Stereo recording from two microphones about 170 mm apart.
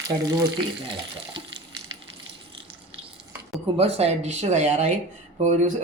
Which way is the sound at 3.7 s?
40° right (ahead or behind).